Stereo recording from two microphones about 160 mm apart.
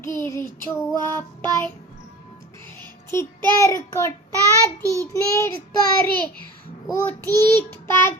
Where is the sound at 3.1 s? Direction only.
15° left (ahead or behind).